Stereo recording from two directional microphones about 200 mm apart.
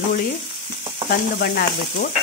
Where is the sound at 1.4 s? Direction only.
50° left (ahead or behind).